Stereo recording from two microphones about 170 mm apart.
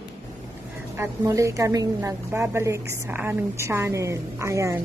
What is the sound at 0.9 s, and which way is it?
A woman's voice, 20° right (ahead or behind).